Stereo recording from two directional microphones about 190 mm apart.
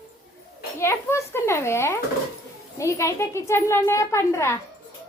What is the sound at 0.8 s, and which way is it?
A child's voice, 15° left (ahead or behind).